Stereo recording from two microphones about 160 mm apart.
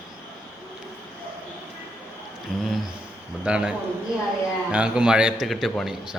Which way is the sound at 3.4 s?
5° right (ahead or behind).